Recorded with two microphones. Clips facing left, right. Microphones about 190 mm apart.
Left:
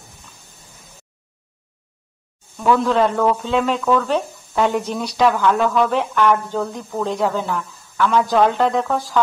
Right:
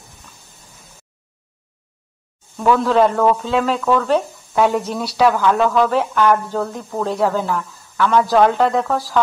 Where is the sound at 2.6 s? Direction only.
Centre (ahead or behind).